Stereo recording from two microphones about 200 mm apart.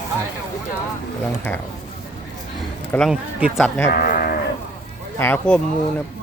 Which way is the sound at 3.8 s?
50° left (ahead or behind).